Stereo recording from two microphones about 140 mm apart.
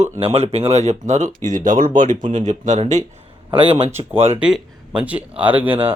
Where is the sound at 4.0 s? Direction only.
35° right (ahead or behind).